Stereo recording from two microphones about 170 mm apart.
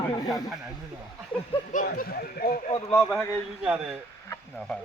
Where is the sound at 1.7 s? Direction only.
55° left (ahead or behind).